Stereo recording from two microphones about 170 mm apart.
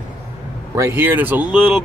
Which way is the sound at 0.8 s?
10° right (ahead or behind).